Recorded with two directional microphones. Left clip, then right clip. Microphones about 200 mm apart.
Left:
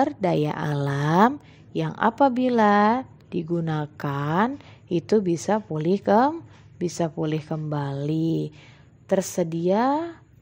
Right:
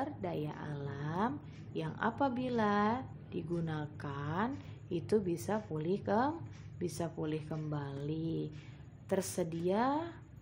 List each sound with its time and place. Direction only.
0.0 s a woman's voice: 50° left (ahead or behind)